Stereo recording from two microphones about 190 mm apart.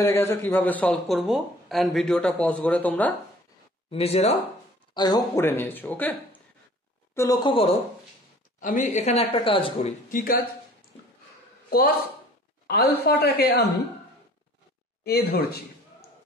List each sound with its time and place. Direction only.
0.0 s speech: 15° left (ahead or behind)
3.9 s a man's voice: 35° left (ahead or behind)
4.9 s speech: 20° left (ahead or behind)
7.2 s speech: 20° left (ahead or behind)
8.5 s a man's voice: 40° left (ahead or behind)
10.1 s speech: 50° left (ahead or behind)
12.6 s a man's voice: 55° left (ahead or behind)
15.0 s speech: 55° left (ahead or behind)